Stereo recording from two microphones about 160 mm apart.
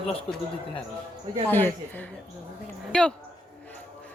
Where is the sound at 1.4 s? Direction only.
10° left (ahead or behind).